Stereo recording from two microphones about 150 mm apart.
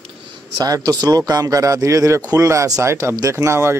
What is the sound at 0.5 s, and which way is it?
Speech, 25° right (ahead or behind).